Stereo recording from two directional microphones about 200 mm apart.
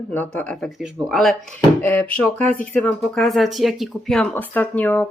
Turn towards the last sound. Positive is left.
turn(degrees=10)  # may be behind; listen again after turning